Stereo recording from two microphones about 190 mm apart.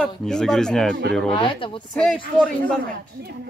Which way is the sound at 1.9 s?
5° left (ahead or behind).